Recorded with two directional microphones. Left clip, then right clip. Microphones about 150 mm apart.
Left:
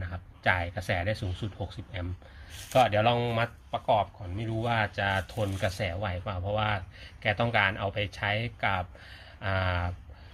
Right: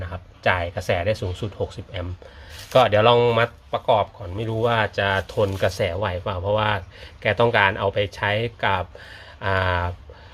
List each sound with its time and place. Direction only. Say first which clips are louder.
0.0 s speech: right 6 dB; 30° right (ahead or behind)
2.7 s speech: right 8 dB; 45° right (ahead or behind)